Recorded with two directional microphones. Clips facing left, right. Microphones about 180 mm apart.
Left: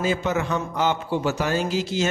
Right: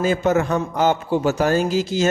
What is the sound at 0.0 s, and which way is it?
A man's voice, 45° right (ahead or behind).